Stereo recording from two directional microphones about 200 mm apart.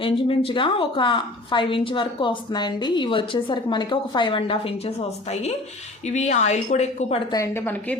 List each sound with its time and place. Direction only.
0.0 s a woman's voice: 25° left (ahead or behind)
7.3 s a woman's voice: 15° left (ahead or behind)